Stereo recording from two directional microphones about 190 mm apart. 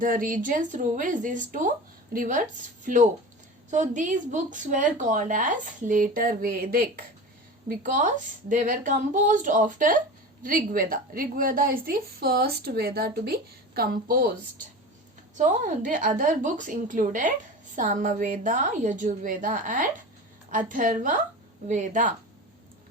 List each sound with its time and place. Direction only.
0.0 s a woman's voice: 45° right (ahead or behind)
15.4 s a woman's voice: 40° right (ahead or behind)